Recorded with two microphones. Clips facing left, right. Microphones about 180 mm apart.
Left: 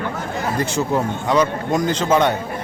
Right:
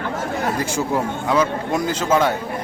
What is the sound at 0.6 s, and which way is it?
A man's voice, 10° right (ahead or behind).